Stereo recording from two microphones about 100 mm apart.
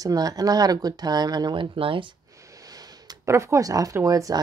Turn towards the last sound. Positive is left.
turn(degrees=-35)  # may be behind; listen again after turning